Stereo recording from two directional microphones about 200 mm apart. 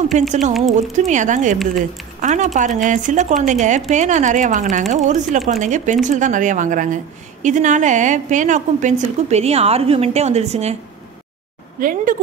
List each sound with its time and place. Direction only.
0.3 s a woman's voice: 40° right (ahead or behind)
0.6 s speech: centre (ahead or behind)
0.9 s a woman's voice: 35° right (ahead or behind)
11.8 s speech: 45° right (ahead or behind)